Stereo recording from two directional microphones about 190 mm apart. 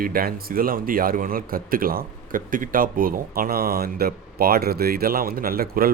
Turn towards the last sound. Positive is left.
turn(degrees=-50)  # may be behind; listen again after turning